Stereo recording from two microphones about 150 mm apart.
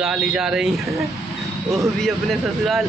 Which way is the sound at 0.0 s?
Centre (ahead or behind).